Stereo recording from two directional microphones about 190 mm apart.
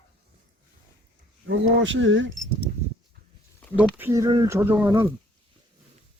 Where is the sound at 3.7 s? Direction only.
10° right (ahead or behind).